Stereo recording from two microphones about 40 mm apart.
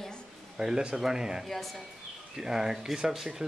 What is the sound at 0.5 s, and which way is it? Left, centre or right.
Speech, centre.